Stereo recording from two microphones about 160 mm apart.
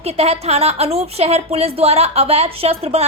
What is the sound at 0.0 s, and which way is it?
Speech, 40° right (ahead or behind).